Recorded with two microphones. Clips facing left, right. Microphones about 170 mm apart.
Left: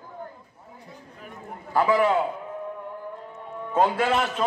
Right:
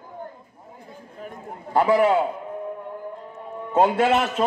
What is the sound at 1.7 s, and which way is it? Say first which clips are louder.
Speech: right 3 dB; 35° right (ahead or behind).